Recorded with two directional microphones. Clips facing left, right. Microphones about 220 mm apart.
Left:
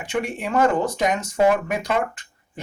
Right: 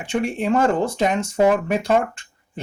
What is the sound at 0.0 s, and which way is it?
Speech, 30° right (ahead or behind).